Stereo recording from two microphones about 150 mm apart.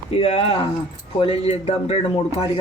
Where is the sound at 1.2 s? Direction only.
40° left (ahead or behind).